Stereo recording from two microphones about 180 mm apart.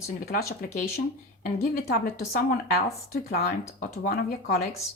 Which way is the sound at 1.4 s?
55° left (ahead or behind).